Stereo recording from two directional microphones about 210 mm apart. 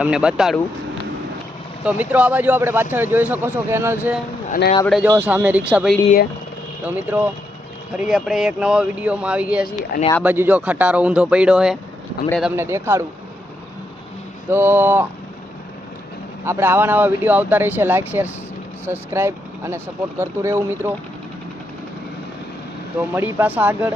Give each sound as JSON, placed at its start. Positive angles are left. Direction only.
{"t": 0.0, "sound": "speech", "side_deg": -5}
{"t": 1.8, "sound": "speech", "side_deg": -5}
{"t": 4.4, "sound": "speech", "side_deg": 40}
{"t": 4.9, "sound": "speech", "side_deg": -5}
{"t": 14.5, "sound": "speech", "side_deg": -10}
{"t": 16.5, "sound": "speech", "side_deg": -10}
{"t": 23.1, "sound": "speech", "side_deg": -10}